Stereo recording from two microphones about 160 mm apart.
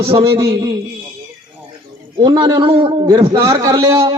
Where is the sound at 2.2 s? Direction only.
25° right (ahead or behind).